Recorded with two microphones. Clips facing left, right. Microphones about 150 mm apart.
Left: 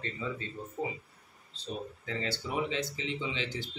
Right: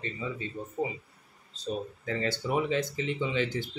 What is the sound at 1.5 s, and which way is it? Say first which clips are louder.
Speech: right 5 dB; 45° right (ahead or behind).